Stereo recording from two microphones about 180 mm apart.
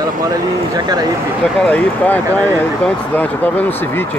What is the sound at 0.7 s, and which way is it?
Speech, 20° right (ahead or behind).